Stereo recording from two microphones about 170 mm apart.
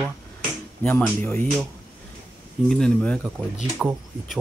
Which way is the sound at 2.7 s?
5° left (ahead or behind).